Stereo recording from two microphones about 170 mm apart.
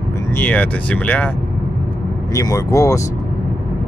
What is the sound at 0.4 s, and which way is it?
Speech, 10° left (ahead or behind).